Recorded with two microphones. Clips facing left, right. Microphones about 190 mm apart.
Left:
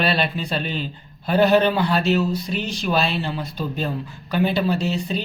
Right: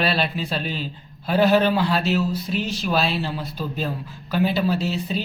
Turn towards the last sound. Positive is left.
turn(degrees=-5)  # may be behind; listen again after turning